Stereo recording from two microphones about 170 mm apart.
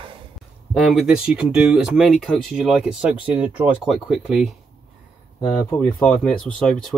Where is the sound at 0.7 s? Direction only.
Centre (ahead or behind).